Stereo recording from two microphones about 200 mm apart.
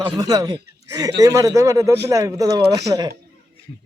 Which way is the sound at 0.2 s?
20° right (ahead or behind).